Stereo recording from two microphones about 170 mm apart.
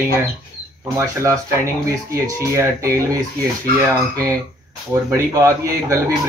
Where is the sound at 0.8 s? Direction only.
15° right (ahead or behind).